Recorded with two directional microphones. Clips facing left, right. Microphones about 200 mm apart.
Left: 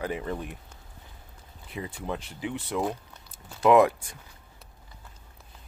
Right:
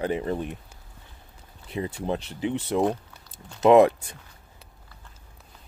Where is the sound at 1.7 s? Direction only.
30° right (ahead or behind).